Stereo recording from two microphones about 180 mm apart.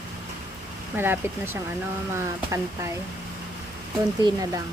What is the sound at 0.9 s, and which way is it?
Speech, 10° right (ahead or behind).